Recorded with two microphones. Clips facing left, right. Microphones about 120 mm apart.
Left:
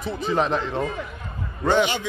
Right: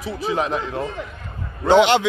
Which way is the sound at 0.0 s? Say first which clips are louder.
Even; centre (ahead or behind).